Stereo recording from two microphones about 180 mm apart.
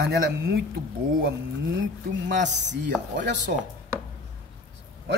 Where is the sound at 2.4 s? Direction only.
75° right (ahead or behind).